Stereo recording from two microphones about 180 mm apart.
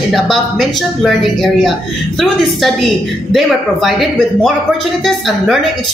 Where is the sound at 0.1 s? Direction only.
Centre (ahead or behind).